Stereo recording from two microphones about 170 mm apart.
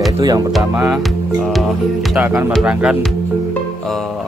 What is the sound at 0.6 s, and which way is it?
Speech, 10° right (ahead or behind).